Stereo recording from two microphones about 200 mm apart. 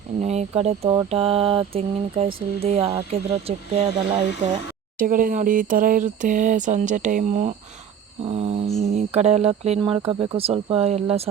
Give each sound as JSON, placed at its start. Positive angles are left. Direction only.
{"t": 0.2, "sound": "speech", "side_deg": -35}
{"t": 4.9, "sound": "speech", "side_deg": -45}